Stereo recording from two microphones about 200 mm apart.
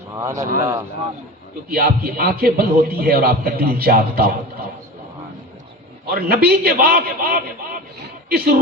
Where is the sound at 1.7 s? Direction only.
50° right (ahead or behind).